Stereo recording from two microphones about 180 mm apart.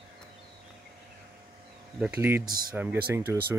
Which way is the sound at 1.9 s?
10° right (ahead or behind).